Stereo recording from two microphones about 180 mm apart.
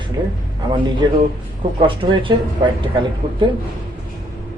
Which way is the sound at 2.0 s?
25° right (ahead or behind).